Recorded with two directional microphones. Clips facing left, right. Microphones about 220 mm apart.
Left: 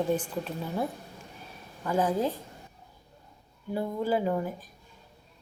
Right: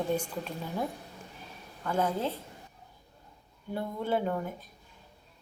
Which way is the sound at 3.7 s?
5° left (ahead or behind).